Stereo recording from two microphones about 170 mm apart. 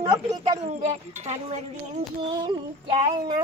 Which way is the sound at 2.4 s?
25° right (ahead or behind).